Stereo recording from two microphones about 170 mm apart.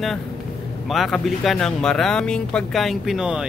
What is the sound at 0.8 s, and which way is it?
Speech, centre (ahead or behind).